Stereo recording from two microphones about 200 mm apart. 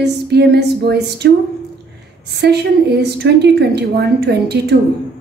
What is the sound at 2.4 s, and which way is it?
A woman's voice, 55° right (ahead or behind).